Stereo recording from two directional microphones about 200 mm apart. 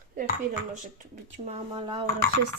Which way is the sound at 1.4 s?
25° right (ahead or behind).